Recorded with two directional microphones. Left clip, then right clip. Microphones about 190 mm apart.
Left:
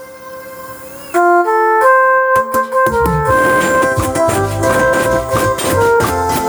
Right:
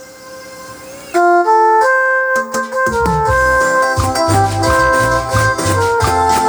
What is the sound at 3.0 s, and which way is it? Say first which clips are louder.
Organ: even; 60° left (ahead or behind).